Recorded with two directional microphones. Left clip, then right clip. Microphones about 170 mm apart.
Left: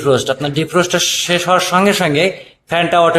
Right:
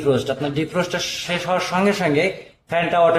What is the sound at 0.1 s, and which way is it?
A man's voice, 25° left (ahead or behind).